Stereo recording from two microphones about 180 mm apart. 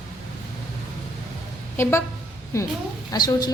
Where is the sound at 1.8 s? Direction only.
15° left (ahead or behind).